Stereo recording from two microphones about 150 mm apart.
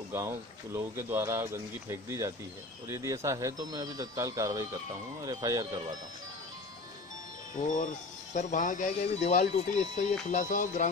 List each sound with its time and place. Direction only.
0.1 s speech: 20° right (ahead or behind)
7.5 s speech: 60° left (ahead or behind)